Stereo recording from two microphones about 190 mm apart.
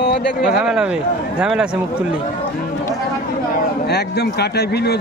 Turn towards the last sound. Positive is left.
turn(degrees=60)  # may be behind; listen again after turning